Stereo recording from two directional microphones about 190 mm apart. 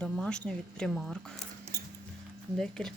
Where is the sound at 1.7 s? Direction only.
60° right (ahead or behind).